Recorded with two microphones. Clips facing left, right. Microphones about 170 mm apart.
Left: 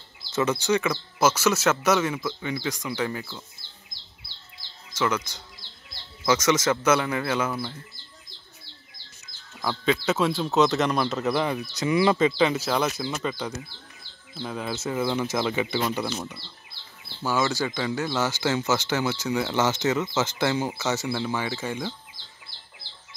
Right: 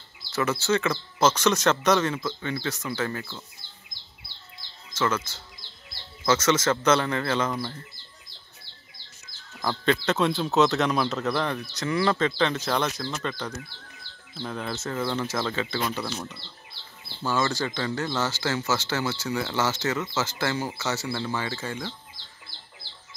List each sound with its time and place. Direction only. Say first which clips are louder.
0.3 s speech: left 1 dB; 20° left (ahead or behind)
4.9 s speech: left 1 dB; 15° left (ahead or behind)
9.6 s speech: even; 5° left (ahead or behind)